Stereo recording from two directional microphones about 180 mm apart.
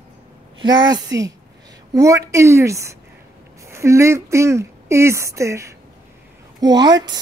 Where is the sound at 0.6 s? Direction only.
25° right (ahead or behind).